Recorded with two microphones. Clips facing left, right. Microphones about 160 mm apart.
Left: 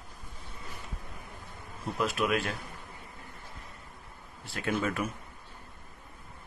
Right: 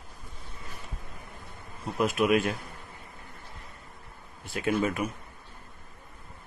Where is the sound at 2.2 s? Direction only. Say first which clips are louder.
Right 7 dB; 20° right (ahead or behind).